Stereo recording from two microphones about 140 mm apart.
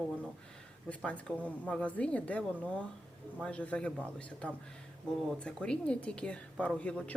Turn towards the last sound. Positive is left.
turn(degrees=10)  # may be behind; listen again after turning